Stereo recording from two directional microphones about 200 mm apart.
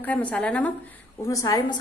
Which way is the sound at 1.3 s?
15° left (ahead or behind).